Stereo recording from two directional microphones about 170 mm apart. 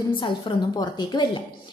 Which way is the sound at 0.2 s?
25° left (ahead or behind).